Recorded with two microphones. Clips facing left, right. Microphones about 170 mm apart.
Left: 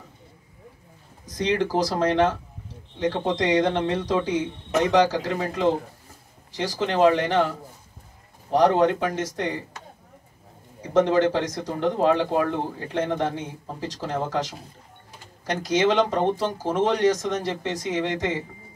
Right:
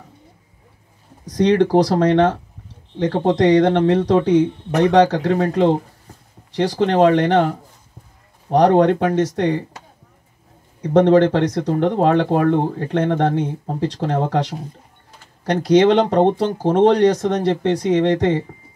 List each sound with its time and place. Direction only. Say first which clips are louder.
1.2 s speech: right 9 dB; 65° right (ahead or behind)
3.2 s speech: right 11 dB; 35° right (ahead or behind)
3.7 s speech: right 8 dB; 60° right (ahead or behind)
10.8 s speech: right 7 dB; 60° right (ahead or behind)